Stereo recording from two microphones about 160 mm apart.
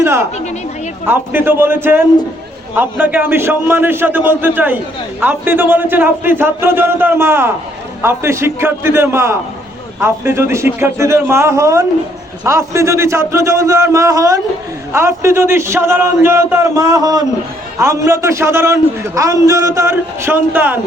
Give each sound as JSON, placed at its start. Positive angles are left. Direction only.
{"t": 0.0, "sound": "a woman's voice", "side_deg": -15}